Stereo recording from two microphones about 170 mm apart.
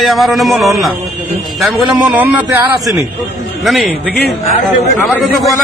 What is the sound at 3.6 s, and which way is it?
Speech, centre (ahead or behind).